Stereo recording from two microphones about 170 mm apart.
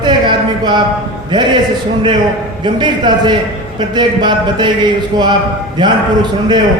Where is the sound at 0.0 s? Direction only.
25° right (ahead or behind).